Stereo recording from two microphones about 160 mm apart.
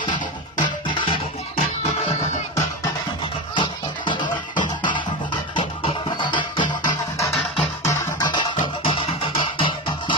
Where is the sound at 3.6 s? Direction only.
30° left (ahead or behind).